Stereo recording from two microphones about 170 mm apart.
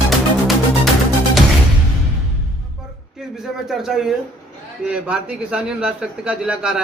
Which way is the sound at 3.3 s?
Centre (ahead or behind).